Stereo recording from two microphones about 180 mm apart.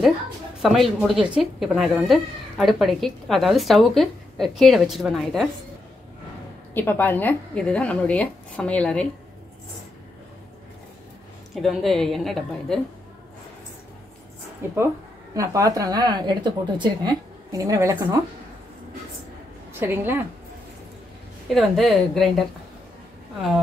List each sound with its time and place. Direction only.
0.6 s speech: centre (ahead or behind)
6.7 s speech: 10° left (ahead or behind)
11.5 s speech: centre (ahead or behind)
14.6 s speech: 10° right (ahead or behind)
19.8 s speech: 15° right (ahead or behind)
21.5 s speech: centre (ahead or behind)